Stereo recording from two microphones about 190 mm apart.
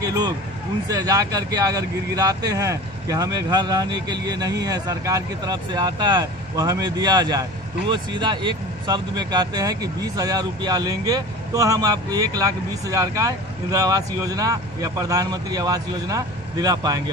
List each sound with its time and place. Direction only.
0.0 s speech: 20° right (ahead or behind)